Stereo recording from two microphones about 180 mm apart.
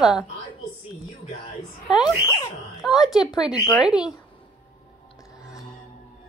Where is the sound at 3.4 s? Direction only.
Centre (ahead or behind).